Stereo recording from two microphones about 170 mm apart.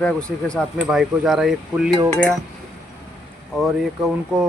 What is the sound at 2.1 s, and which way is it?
Cutlery, 10° left (ahead or behind).